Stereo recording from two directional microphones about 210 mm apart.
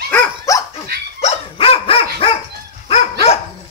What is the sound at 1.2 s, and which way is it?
Dog, 25° left (ahead or behind).